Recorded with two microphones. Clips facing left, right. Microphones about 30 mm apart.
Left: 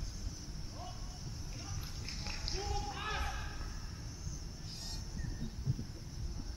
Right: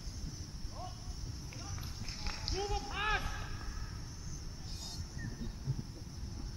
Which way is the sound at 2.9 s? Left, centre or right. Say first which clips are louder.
Right 6 dB; centre.